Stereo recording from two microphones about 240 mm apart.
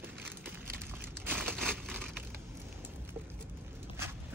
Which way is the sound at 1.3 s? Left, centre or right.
Centre.